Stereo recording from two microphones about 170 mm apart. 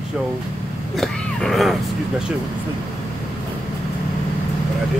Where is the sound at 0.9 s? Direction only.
Centre (ahead or behind).